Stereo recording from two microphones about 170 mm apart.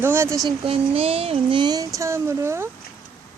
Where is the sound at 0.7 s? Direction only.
35° right (ahead or behind); by 2.7 s 15° right (ahead or behind).